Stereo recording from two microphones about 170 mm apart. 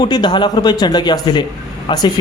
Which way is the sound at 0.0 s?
25° left (ahead or behind).